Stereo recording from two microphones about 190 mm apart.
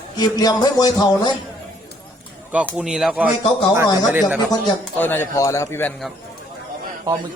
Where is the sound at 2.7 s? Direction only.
Centre (ahead or behind).